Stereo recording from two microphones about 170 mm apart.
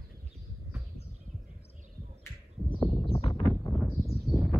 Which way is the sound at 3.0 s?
35° left (ahead or behind).